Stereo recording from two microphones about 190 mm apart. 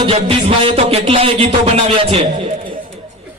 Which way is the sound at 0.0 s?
30° right (ahead or behind).